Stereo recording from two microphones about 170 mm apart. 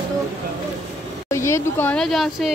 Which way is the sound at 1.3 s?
15° left (ahead or behind).